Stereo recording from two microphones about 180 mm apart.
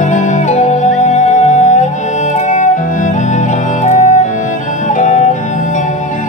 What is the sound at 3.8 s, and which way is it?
Music, 40° left (ahead or behind).